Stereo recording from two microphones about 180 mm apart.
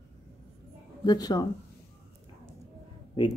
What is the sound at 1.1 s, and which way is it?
Speech, 20° left (ahead or behind).